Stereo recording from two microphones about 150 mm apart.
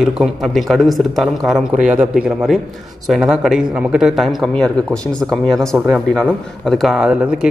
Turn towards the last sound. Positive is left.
turn(degrees=-5)  # may be behind; listen again after turning